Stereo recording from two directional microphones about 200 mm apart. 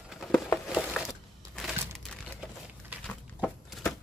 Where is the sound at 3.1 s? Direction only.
5° left (ahead or behind).